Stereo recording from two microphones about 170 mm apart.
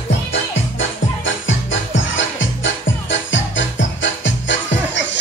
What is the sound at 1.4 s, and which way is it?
Music, 90° left.